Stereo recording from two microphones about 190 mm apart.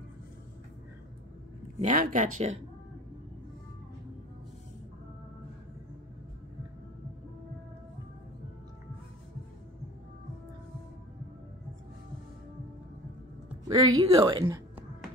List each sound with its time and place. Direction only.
1.8 s speech: 40° right (ahead or behind)
13.7 s speech: 25° right (ahead or behind)
14.4 s music: 15° right (ahead or behind)